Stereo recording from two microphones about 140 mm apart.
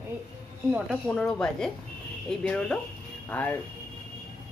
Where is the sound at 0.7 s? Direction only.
10° right (ahead or behind).